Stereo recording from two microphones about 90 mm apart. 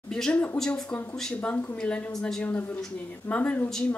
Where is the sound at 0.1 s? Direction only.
10° left (ahead or behind).